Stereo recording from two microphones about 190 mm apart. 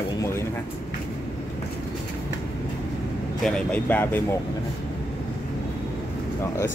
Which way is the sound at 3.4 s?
5° left (ahead or behind).